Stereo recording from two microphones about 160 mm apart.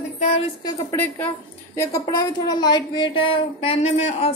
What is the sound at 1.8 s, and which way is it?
A woman's voice, 25° left (ahead or behind).